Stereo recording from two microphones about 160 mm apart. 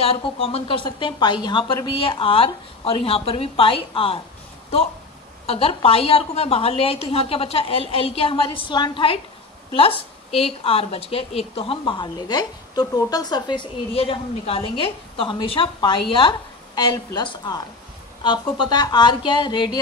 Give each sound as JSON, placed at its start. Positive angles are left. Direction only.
{"t": 0.0, "sound": "a woman's voice", "side_deg": 40}
{"t": 5.5, "sound": "a woman's voice", "side_deg": 35}